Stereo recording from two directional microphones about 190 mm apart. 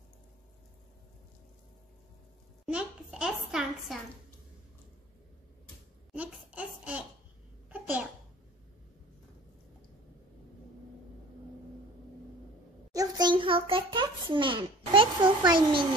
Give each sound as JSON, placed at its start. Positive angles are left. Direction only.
{"t": 2.6, "sound": "a sound", "side_deg": -5}
{"t": 6.1, "sound": "babbling", "side_deg": -10}
{"t": 12.9, "sound": "a child's voice", "side_deg": -20}